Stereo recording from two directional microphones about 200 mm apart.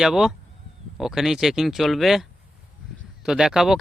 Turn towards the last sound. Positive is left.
turn(degrees=0)  # may be behind; listen again after turning